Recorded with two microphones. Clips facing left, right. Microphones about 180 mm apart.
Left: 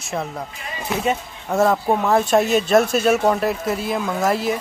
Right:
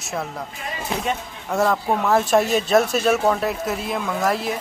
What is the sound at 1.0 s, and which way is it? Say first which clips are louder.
Speech: left 3 dB; centre (ahead or behind).